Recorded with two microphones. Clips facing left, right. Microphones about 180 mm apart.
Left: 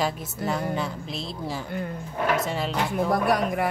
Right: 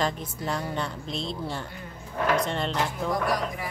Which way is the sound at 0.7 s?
5° left (ahead or behind).